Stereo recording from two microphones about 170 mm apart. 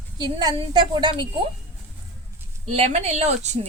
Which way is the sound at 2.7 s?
40° right (ahead or behind).